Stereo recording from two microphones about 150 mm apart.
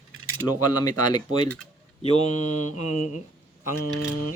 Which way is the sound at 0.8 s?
30° left (ahead or behind).